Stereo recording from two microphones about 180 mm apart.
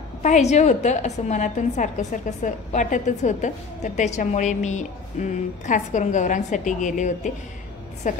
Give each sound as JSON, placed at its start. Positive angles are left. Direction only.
{"t": 0.2, "sound": "a woman's voice", "side_deg": 40}